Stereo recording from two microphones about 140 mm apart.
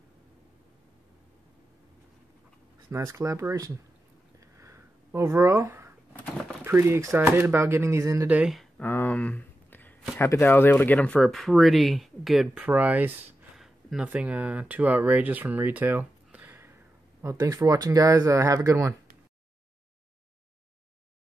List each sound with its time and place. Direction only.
2.9 s speech: 20° right (ahead or behind)
4.6 s a sound: 20° right (ahead or behind)
6.6 s speech: 20° right (ahead or behind)
8.3 s speech: 5° right (ahead or behind)
8.7 s a sound: 15° left (ahead or behind)
10.1 s speech: 20° left (ahead or behind); by 18.9 s 25° right (ahead or behind)